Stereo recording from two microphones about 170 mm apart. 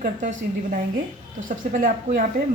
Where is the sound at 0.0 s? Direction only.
50° right (ahead or behind).